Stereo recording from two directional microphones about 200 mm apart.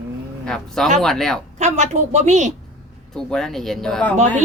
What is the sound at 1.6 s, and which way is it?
Speech, 35° right (ahead or behind).